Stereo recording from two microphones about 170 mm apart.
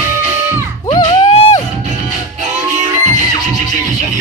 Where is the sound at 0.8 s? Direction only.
30° left (ahead or behind).